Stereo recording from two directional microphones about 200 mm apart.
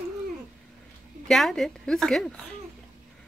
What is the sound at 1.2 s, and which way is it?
A woman's voice, centre (ahead or behind).